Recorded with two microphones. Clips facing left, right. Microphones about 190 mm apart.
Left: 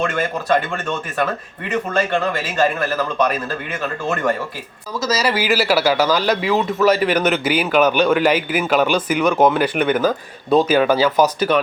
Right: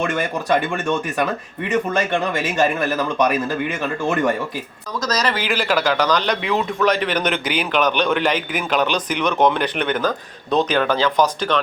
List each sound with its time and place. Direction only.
0.1 s a man's voice: 15° right (ahead or behind)
4.9 s a man's voice: 5° left (ahead or behind)